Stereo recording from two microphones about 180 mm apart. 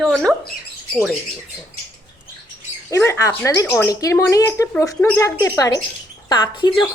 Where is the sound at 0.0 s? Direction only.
Centre (ahead or behind).